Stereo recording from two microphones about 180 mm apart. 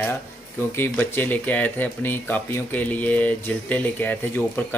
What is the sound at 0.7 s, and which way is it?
Speech, 10° left (ahead or behind).